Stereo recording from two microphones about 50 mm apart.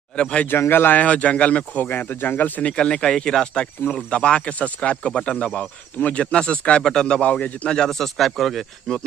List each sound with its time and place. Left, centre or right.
0.1 s a man's voice: centre
0.7 s speech: left
0.9 s speech: left
1.9 s speech: left
2.6 s a man's voice: centre
6.8 s a man's voice: centre